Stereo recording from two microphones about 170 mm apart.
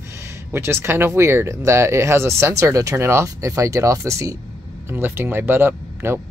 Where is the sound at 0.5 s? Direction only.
15° right (ahead or behind).